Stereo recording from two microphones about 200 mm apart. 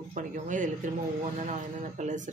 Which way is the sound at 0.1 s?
40° right (ahead or behind).